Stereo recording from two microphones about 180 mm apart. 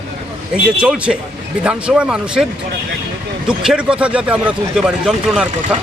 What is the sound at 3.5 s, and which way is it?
Speech, 5° right (ahead or behind).